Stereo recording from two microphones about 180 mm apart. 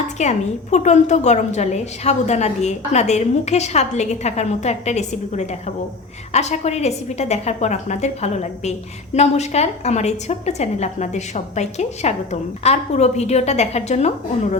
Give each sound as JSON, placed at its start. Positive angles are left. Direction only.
{"t": 0.2, "sound": "a woman's voice", "side_deg": 40}